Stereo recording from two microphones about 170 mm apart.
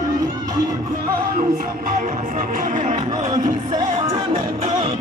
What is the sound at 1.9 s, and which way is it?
Music, 50° right (ahead or behind).